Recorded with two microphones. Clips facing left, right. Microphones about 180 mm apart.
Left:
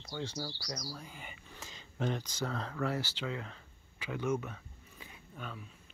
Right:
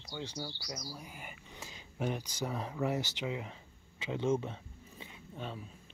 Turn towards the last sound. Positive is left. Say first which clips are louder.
# right 3 dB
turn(degrees=-30)  # may be behind; listen again after turning